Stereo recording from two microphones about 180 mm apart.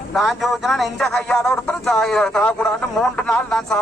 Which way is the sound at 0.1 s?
Centre (ahead or behind).